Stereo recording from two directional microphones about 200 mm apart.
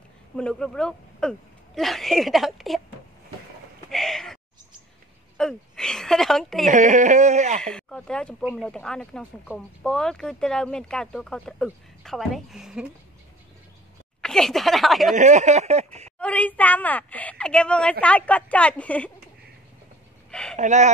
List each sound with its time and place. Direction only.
0.4 s speech: 5° left (ahead or behind)
3.9 s a sound: centre (ahead or behind)
5.4 s a woman's voice: 5° left (ahead or behind)
6.7 s speech: 40° right (ahead or behind)
7.6 s speech: 5° left (ahead or behind)
14.2 s speech: centre (ahead or behind)
15.1 s speech: 35° right (ahead or behind)
16.2 s a woman's voice: 5° left (ahead or behind)
20.2 s a sound: 5° left (ahead or behind)
20.5 s speech: 35° right (ahead or behind)